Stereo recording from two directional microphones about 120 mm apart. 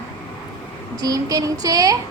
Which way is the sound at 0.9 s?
30° right (ahead or behind).